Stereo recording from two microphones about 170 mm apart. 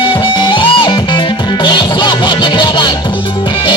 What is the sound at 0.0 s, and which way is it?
Music, 30° left (ahead or behind).